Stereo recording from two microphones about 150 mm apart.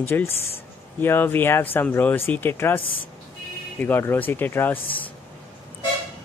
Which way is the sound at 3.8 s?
15° left (ahead or behind).